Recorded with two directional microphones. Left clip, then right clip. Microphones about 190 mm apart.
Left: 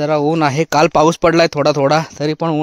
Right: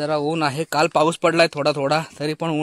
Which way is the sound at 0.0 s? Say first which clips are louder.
Left 7 dB; 45° left (ahead or behind).